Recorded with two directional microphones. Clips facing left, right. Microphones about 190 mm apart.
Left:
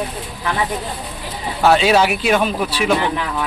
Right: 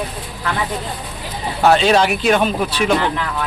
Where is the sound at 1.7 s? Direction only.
5° left (ahead or behind).